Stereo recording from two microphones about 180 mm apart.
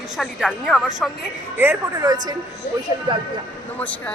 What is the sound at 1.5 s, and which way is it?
Speech, 15° right (ahead or behind).